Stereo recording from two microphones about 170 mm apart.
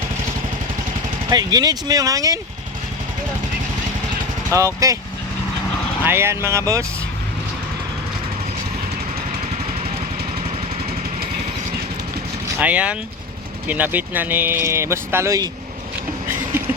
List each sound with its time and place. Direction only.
1.3 s speech: 25° right (ahead or behind)
4.5 s speech: 20° right (ahead or behind)
6.1 s speech: 15° right (ahead or behind)
12.5 s speech: 10° right (ahead or behind)